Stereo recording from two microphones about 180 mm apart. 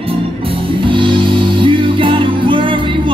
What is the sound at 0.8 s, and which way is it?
Music, 25° right (ahead or behind).